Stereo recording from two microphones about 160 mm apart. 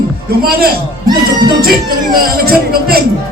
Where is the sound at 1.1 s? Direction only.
25° right (ahead or behind).